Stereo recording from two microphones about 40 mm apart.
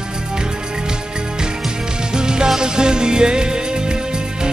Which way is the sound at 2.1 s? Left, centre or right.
Centre.